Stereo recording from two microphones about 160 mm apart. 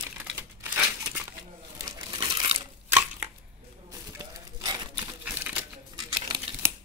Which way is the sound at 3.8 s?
20° right (ahead or behind).